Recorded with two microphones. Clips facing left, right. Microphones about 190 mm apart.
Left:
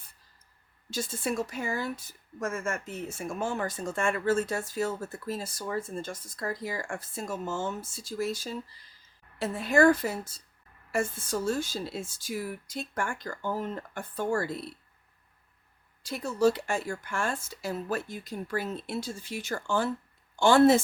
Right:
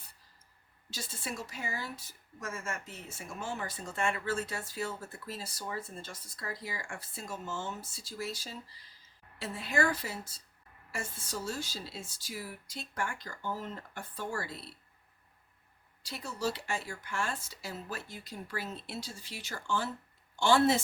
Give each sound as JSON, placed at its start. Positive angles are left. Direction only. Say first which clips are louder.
{"t": 0.9, "sound": "speech", "louder": "left 9 dB", "side_deg": 50}
{"t": 16.0, "sound": "speech", "louder": "left 10 dB", "side_deg": 50}